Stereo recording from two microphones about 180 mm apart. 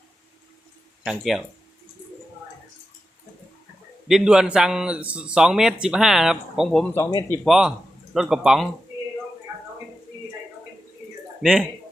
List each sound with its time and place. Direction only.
1.0 s a man's voice: centre (ahead or behind)
4.1 s a man's voice: 5° right (ahead or behind)
6.9 s speech: 20° left (ahead or behind)
7.4 s a man's voice: centre (ahead or behind)